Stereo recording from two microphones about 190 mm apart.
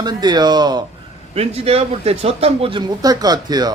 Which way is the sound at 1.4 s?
30° right (ahead or behind).